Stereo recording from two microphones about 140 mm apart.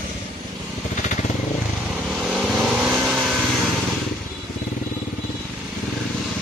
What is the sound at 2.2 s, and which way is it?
Vehicle, centre (ahead or behind).